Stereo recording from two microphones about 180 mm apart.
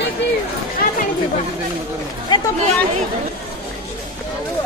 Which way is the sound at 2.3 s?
25° left (ahead or behind).